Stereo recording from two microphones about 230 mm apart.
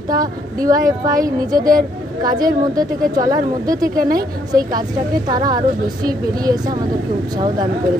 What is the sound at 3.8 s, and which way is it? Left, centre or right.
Speech, right.